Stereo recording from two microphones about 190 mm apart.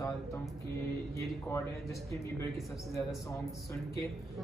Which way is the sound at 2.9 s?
15° left (ahead or behind).